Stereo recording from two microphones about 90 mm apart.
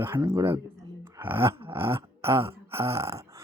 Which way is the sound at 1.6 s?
25° right (ahead or behind).